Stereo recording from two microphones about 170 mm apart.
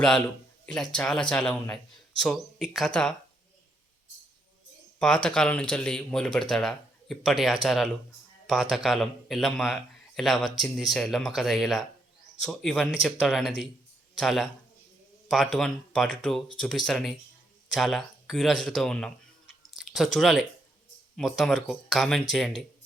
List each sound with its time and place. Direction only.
0.6 s speech: 5° left (ahead or behind)
4.9 s speech: 5° left (ahead or behind)
15.5 s speech: centre (ahead or behind)
19.8 s a sound: centre (ahead or behind)
20.1 s speech: centre (ahead or behind)